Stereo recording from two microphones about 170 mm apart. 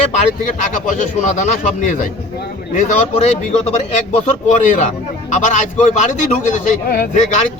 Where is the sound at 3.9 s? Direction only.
45° left (ahead or behind).